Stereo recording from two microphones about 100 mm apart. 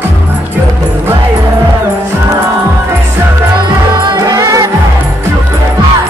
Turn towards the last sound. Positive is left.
turn(degrees=-35)  # may be behind; listen again after turning